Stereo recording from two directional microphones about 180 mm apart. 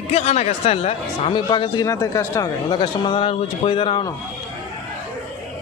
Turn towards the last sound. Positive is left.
turn(degrees=30)  # may be behind; listen again after turning